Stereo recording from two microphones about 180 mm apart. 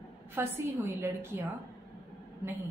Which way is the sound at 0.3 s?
15° right (ahead or behind).